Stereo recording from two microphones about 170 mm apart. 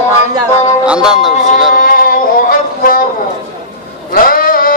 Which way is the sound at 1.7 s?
55° left (ahead or behind).